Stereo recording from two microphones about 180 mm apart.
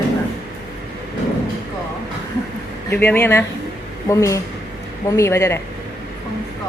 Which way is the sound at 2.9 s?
10° left (ahead or behind).